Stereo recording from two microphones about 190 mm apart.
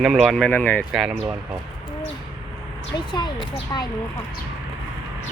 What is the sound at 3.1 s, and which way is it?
Speech, 25° left (ahead or behind).